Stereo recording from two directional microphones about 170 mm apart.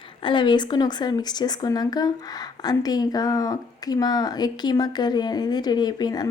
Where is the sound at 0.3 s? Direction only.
30° left (ahead or behind).